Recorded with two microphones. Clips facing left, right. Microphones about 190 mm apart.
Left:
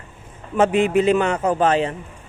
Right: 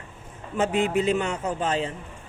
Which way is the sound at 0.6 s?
65° left (ahead or behind).